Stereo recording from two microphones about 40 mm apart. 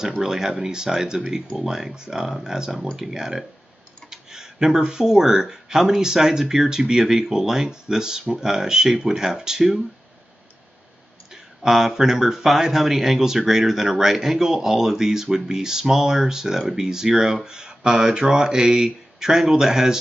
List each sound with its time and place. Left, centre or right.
0.2 s speech: centre
4.1 s tick: centre
4.7 s speech: centre
11.3 s a sound: centre
11.9 s speech: centre
17.5 s speech: centre